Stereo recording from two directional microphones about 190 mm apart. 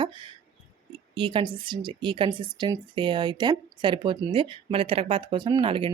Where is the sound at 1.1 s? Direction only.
25° right (ahead or behind).